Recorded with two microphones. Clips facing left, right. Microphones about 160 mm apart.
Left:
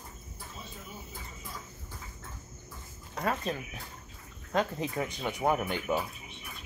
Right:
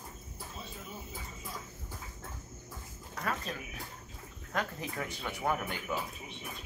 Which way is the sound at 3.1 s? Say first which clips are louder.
Left 5 dB; 25° left (ahead or behind).